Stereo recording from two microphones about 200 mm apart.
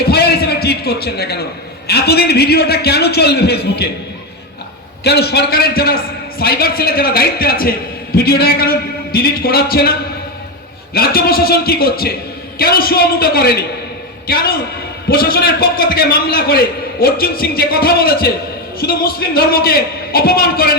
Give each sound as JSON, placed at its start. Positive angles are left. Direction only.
{"t": 0.0, "sound": "a sound", "side_deg": 55}
{"t": 1.9, "sound": "a man's voice", "side_deg": 55}
{"t": 5.0, "sound": "a man's voice", "side_deg": 55}
{"t": 10.9, "sound": "a man's voice", "side_deg": 50}